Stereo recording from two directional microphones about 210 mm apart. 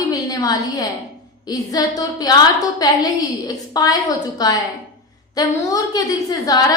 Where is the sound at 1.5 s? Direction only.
20° left (ahead or behind).